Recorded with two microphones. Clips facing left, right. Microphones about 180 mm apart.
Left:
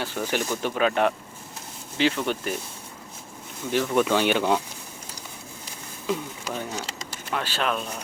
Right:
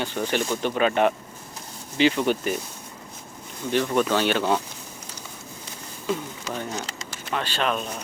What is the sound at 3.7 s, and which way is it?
Speech, 5° left (ahead or behind).